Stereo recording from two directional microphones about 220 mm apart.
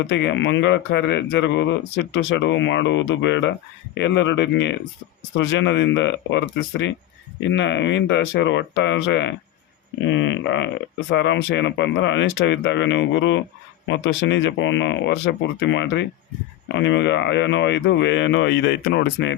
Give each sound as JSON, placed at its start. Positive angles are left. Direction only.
{"t": 0.0, "sound": "speech", "side_deg": 55}